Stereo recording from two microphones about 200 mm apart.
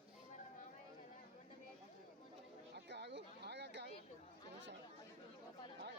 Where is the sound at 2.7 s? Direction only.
55° right (ahead or behind).